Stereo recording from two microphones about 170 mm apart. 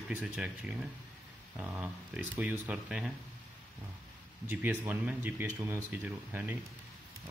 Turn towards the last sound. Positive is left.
turn(degrees=-10)  # may be behind; listen again after turning